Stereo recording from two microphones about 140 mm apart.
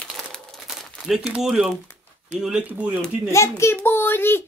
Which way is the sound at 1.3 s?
5° right (ahead or behind).